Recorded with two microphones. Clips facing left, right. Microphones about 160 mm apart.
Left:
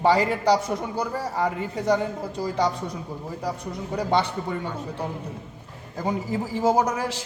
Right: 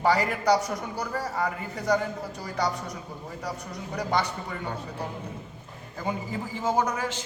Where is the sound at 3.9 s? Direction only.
30° left (ahead or behind).